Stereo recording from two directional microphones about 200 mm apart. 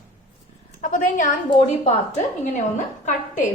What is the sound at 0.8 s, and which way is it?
A woman's voice, 40° left (ahead or behind).